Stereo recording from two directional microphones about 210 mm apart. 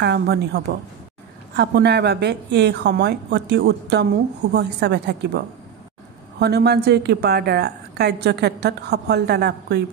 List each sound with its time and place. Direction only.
0.0 s a woman's voice: 55° right (ahead or behind)
6.4 s a woman's voice: 50° right (ahead or behind)